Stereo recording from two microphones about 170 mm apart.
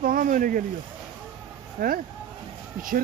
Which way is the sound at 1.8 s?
60° right (ahead or behind).